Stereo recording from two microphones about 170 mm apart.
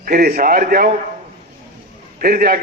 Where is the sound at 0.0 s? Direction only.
60° right (ahead or behind).